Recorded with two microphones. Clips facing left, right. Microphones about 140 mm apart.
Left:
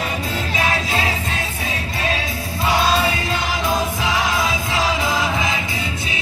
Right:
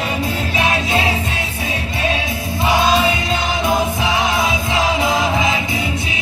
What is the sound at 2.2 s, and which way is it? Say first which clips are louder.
Music: right 3 dB; 20° right (ahead or behind).